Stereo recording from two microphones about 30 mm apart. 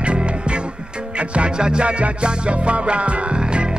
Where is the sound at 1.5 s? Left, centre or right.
Right.